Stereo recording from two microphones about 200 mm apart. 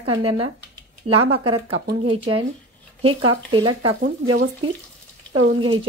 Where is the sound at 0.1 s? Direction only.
25° right (ahead or behind).